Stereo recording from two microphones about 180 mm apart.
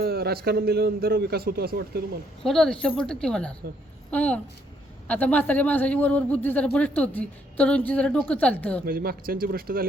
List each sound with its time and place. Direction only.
0.0 s a man's voice: 60° right (ahead or behind)
2.4 s a woman's voice: centre (ahead or behind)
8.9 s a man's voice: 55° right (ahead or behind)